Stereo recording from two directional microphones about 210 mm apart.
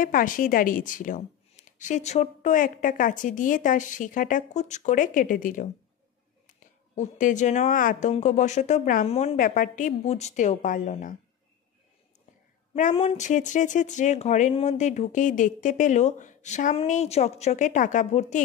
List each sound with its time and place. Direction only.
0.0 s speech: 40° left (ahead or behind)
7.0 s speech: 35° left (ahead or behind)
12.7 s speech: 35° left (ahead or behind)